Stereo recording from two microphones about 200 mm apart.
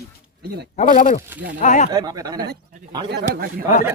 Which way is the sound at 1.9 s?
20° right (ahead or behind).